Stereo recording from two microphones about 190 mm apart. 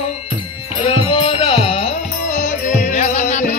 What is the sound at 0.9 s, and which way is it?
Music, 30° left (ahead or behind).